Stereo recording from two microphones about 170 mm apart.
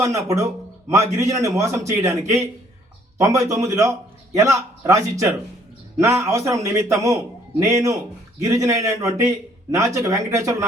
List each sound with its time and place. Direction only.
0.0 s a man's voice: 20° right (ahead or behind)